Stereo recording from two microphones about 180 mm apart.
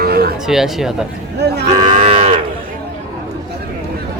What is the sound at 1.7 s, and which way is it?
Cattle, 35° right (ahead or behind).